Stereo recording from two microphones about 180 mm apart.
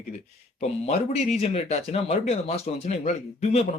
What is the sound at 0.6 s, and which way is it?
Speech, 35° left (ahead or behind).